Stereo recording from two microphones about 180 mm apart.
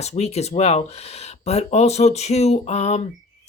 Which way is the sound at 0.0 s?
35° left (ahead or behind).